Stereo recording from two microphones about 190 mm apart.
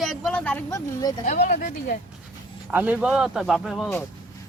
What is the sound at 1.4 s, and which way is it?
Speech, 45° left (ahead or behind).